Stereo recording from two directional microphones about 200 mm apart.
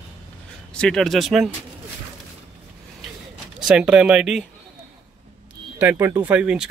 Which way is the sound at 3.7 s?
5° right (ahead or behind).